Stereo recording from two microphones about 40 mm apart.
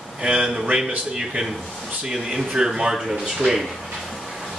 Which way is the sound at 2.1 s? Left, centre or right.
Centre.